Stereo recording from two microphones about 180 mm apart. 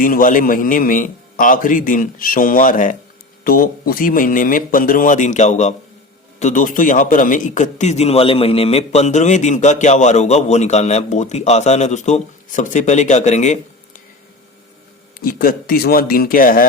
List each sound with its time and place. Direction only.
0.0 s a man's voice: 50° left (ahead or behind)
15.2 s speech: 55° left (ahead or behind)